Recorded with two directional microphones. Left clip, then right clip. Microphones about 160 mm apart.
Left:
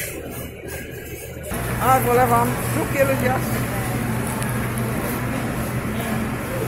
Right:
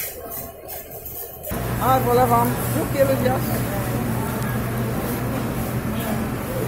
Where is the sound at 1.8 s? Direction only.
15° right (ahead or behind).